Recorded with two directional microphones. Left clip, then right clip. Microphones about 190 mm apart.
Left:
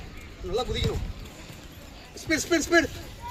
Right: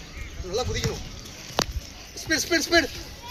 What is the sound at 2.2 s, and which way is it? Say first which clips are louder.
Speech: right 1 dB; 30° left (ahead or behind).